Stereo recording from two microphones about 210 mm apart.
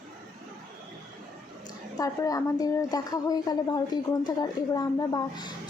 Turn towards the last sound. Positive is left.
turn(degrees=20)  # may be behind; listen again after turning